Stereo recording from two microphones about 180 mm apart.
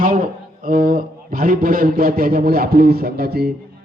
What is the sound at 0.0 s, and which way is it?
A man's voice, 45° right (ahead or behind).